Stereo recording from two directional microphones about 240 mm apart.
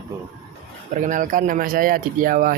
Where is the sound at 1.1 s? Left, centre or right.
Right.